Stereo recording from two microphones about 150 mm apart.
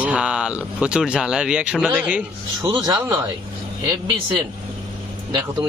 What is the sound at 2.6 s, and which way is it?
Speech, 30° right (ahead or behind).